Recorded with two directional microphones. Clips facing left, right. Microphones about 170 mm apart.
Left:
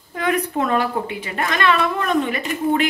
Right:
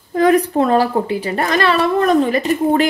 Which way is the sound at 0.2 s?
35° right (ahead or behind).